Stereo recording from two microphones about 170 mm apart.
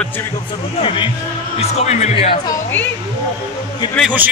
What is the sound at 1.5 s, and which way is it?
Speech, 40° left (ahead or behind).